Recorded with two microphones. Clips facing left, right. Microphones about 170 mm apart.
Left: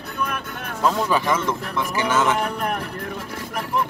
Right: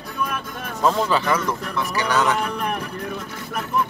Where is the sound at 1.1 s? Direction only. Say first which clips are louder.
Even; 20° left (ahead or behind).